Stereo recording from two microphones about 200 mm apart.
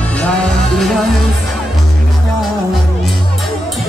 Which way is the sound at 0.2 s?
5° left (ahead or behind).